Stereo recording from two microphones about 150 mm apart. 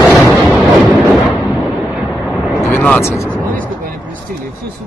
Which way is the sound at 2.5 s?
15° left (ahead or behind).